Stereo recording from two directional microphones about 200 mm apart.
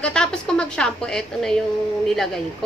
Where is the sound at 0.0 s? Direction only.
5° left (ahead or behind).